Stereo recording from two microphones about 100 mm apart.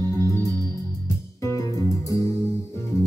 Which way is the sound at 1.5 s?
30° left (ahead or behind).